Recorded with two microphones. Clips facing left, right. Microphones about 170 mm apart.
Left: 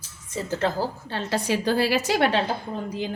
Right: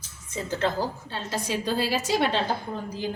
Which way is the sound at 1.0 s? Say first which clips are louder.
Left 5 dB; 70° left (ahead or behind).